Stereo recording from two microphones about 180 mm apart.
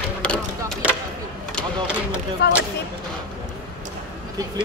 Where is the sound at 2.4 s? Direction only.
65° left (ahead or behind).